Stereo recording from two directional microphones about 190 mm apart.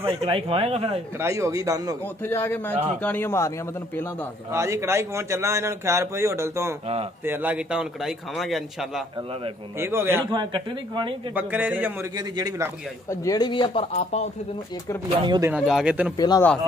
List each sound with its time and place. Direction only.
0.2 s speech: 30° right (ahead or behind)
1.2 s a man's voice: 15° right (ahead or behind)
2.2 s a man's voice: 10° left (ahead or behind)
2.7 s speech: 35° right (ahead or behind)
3.0 s a man's voice: 10° left (ahead or behind)
4.5 s a man's voice: 15° right (ahead or behind)
9.8 s a man's voice: 10° right (ahead or behind)
10.3 s speech: 25° right (ahead or behind)
11.3 s a man's voice: 10° right (ahead or behind)
12.2 s speech: 20° right (ahead or behind)
13.1 s speech: 20° left (ahead or behind)
15.2 s speech: 20° right (ahead or behind)
15.5 s a man's voice: 5° right (ahead or behind)
16.2 s speech: 20° left (ahead or behind)